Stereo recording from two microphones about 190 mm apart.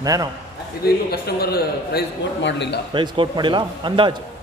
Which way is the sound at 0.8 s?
55° left (ahead or behind).